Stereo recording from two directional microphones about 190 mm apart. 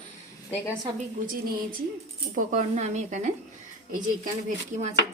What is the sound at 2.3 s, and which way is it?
A woman's voice, 40° right (ahead or behind).